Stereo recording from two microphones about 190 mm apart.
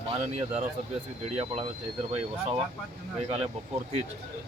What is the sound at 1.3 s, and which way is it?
Speech, 35° right (ahead or behind).